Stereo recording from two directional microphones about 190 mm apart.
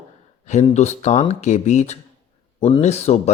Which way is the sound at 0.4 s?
35° left (ahead or behind).